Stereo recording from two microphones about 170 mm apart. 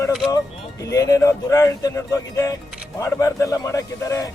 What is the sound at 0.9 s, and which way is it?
A man's voice, 20° left (ahead or behind).